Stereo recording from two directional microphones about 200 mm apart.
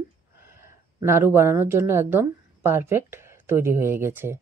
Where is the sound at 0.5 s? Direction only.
10° right (ahead or behind).